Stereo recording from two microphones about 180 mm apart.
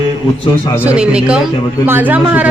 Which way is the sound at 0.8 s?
5° right (ahead or behind).